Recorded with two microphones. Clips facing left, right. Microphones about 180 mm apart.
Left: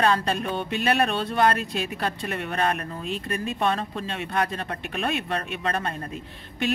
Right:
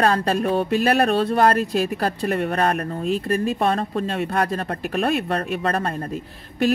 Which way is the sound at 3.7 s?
55° right (ahead or behind).